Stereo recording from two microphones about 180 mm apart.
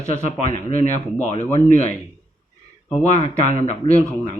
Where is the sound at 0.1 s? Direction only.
40° left (ahead or behind).